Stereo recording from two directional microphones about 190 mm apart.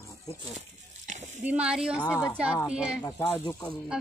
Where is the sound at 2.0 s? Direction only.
10° left (ahead or behind).